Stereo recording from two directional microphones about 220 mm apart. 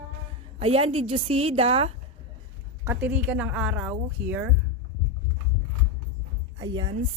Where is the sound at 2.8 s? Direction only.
10° right (ahead or behind).